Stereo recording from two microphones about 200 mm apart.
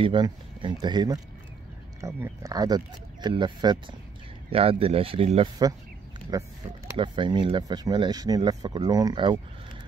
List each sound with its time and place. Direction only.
0.0 s speech: 25° right (ahead or behind)
6.3 s speech: 15° right (ahead or behind)